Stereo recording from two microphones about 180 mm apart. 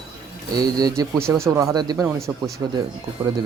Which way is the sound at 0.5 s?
20° right (ahead or behind).